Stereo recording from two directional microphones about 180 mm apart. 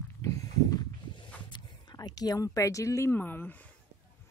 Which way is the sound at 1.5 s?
25° left (ahead or behind).